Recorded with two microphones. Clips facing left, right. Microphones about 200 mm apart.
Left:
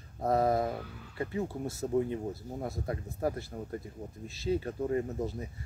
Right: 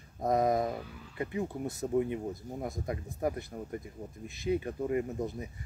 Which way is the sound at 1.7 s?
15° right (ahead or behind).